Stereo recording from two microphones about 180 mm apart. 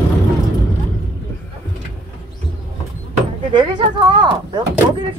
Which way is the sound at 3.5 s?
25° right (ahead or behind).